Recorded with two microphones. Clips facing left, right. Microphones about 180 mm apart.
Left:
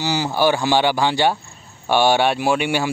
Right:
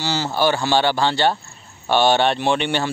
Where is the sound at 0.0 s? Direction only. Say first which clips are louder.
Left 2 dB; 15° left (ahead or behind).